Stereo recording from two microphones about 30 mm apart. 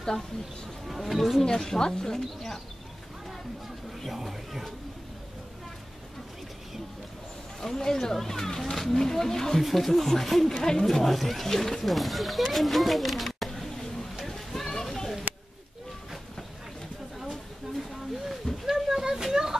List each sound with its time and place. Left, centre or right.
0.8 s speech: centre
1.6 s speech: centre
4.1 s speech: centre
7.6 s speech: centre
9.6 s speech: centre
14.2 s a sound: centre
17.2 s a sound: centre
18.7 s children playing: centre